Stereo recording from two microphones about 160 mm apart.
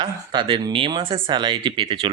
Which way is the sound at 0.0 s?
30° right (ahead or behind).